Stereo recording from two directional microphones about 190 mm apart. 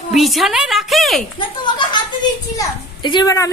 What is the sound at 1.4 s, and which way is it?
A woman's voice, 25° left (ahead or behind).